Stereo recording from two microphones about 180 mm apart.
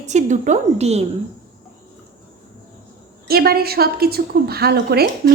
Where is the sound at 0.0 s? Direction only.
40° right (ahead or behind).